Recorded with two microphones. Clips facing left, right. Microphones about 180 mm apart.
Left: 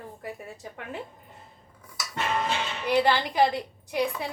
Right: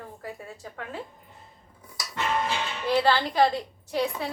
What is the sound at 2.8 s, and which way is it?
Speech, 15° left (ahead or behind).